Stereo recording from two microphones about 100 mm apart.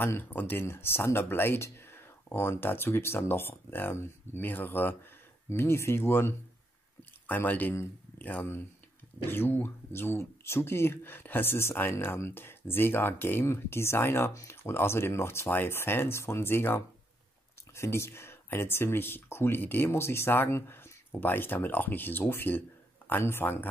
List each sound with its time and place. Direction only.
0.0 s speech: 20° left (ahead or behind)